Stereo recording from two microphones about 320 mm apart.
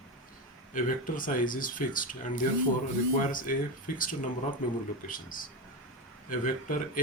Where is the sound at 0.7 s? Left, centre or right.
Left.